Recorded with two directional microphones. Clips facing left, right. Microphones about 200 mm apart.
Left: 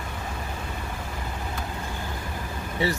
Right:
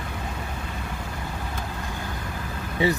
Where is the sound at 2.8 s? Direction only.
15° right (ahead or behind).